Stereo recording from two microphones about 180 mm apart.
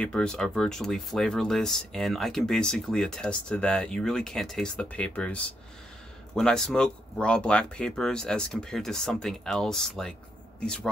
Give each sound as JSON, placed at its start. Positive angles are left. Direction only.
{"t": 0.0, "sound": "a man's voice", "side_deg": 5}